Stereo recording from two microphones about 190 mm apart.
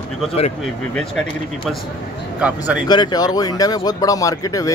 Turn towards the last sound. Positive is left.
turn(degrees=20)  # may be behind; listen again after turning